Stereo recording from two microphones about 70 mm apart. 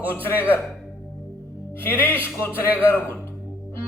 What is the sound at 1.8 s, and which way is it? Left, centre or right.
A man's voice, left.